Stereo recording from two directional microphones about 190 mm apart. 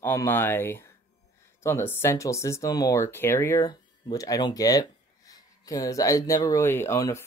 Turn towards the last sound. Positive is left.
turn(degrees=15)  # may be behind; listen again after turning